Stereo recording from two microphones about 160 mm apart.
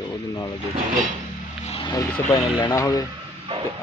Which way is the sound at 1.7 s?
30° left (ahead or behind).